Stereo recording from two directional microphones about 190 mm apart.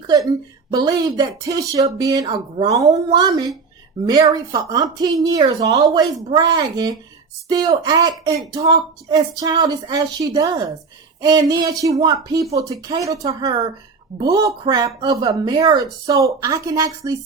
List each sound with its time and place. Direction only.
0.7 s speech: 20° right (ahead or behind)